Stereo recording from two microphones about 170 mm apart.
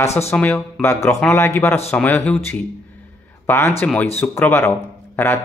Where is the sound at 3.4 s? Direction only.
15° left (ahead or behind).